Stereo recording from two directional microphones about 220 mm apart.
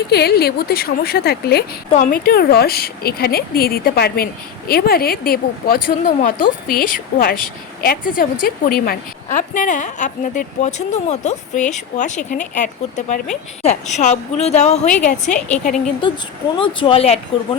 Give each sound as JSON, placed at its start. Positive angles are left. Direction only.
{"t": 0.1, "sound": "a woman's voice", "side_deg": 45}
{"t": 14.8, "sound": "a woman's voice", "side_deg": 5}
{"t": 15.2, "sound": "a woman's voice", "side_deg": 35}
{"t": 16.6, "sound": "speech", "side_deg": 25}